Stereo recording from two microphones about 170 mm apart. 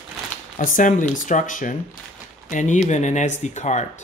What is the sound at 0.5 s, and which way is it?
Speech, 50° left (ahead or behind).